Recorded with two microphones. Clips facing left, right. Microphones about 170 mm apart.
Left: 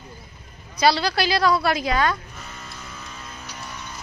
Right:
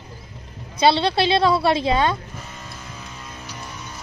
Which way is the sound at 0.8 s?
25° right (ahead or behind).